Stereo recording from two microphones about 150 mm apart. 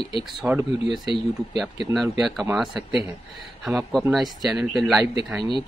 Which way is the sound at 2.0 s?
Centre (ahead or behind).